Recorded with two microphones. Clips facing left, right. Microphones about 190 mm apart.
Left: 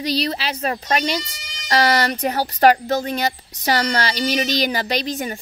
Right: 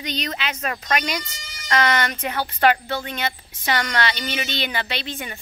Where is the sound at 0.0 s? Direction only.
35° left (ahead or behind).